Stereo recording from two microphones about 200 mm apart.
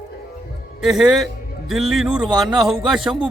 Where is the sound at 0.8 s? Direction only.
Centre (ahead or behind).